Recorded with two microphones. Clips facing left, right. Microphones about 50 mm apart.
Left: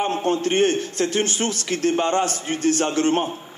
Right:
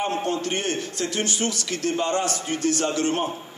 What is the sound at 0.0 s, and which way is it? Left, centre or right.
A man's voice, left.